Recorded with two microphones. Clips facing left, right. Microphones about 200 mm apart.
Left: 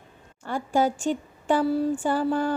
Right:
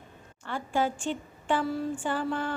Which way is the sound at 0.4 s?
40° left (ahead or behind).